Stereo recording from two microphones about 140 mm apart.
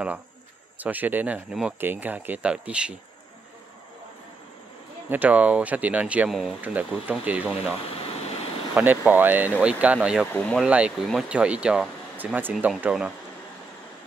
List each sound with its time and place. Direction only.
0.7 s speech: 10° right (ahead or behind)
5.1 s speech: 10° right (ahead or behind)
7.9 s vehicle: 45° left (ahead or behind)
8.7 s speech: 15° right (ahead or behind)
10.2 s speech: 15° left (ahead or behind)
10.5 s speech: 5° right (ahead or behind)